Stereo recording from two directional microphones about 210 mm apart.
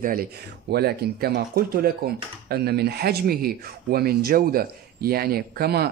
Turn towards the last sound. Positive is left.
turn(degrees=-50)  # may be behind; listen again after turning